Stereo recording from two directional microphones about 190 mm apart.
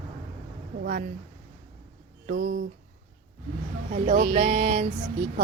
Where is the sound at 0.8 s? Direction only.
50° right (ahead or behind).